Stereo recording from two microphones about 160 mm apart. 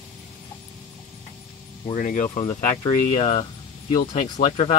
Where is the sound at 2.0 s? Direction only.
60° left (ahead or behind).